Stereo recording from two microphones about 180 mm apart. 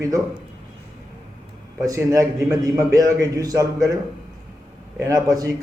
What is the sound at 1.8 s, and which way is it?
A man's voice, 15° right (ahead or behind).